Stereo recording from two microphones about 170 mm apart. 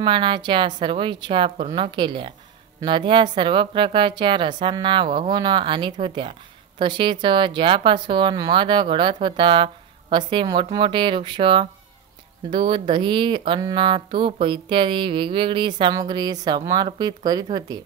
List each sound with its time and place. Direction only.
0.0 s speech: 30° right (ahead or behind)